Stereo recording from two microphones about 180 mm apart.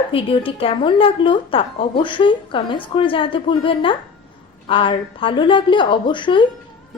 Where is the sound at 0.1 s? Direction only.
30° left (ahead or behind).